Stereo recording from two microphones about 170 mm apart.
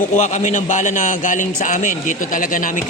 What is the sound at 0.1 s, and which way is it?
A man's voice, 45° left (ahead or behind).